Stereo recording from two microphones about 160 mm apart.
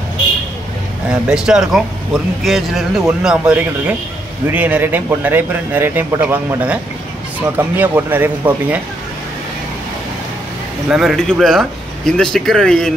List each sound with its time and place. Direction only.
1.3 s speech: 5° right (ahead or behind)
10.9 s speech: centre (ahead or behind)